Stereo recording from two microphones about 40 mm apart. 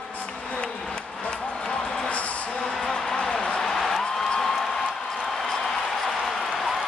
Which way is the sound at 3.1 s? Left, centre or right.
Centre.